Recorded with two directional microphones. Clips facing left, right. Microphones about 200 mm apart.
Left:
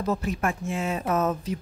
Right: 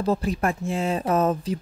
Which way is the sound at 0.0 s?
30° right (ahead or behind).